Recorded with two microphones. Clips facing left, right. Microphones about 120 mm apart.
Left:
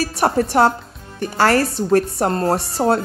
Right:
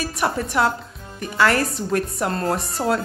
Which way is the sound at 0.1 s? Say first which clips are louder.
Left 6 dB; 40° left (ahead or behind).